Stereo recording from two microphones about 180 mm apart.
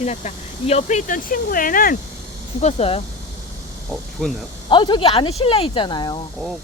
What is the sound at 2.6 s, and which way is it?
Speech, 35° left (ahead or behind).